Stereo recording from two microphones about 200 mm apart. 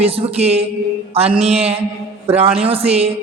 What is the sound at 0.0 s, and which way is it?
A man's voice, 30° right (ahead or behind).